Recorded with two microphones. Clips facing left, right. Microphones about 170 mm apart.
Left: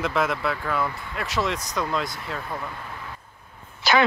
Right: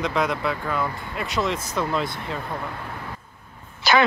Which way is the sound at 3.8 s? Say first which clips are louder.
Right 1 dB; 75° right (ahead or behind).